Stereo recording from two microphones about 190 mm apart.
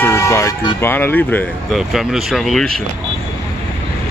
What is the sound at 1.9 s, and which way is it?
Speech, centre (ahead or behind).